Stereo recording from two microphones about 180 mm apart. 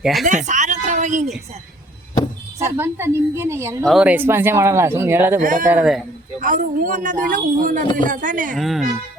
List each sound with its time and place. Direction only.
0.0 s speech: centre (ahead or behind)
0.3 s a sound: 45° right (ahead or behind)
2.7 s speech: 15° right (ahead or behind)
3.8 s speech: 5° right (ahead or behind)
5.4 s a woman's voice: 50° right (ahead or behind)
5.6 s speech: 5° right (ahead or behind)
6.4 s a woman's voice: 45° right (ahead or behind)
8.5 s speech: centre (ahead or behind)